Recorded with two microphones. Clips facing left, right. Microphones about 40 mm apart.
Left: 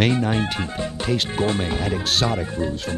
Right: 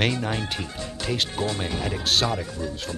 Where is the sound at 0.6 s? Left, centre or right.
Left.